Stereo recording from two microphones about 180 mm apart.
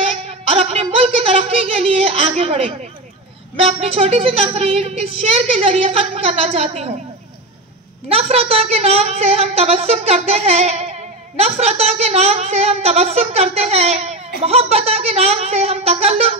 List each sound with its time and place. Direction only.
0.0 s a sound: 35° right (ahead or behind)
3.6 s a woman's voice: 35° right (ahead or behind)
8.1 s a woman's voice: 35° right (ahead or behind)